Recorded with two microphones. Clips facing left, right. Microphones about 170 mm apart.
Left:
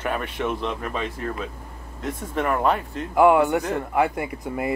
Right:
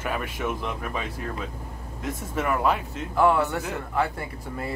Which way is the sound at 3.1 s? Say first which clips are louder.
Left 5 dB; 15° left (ahead or behind).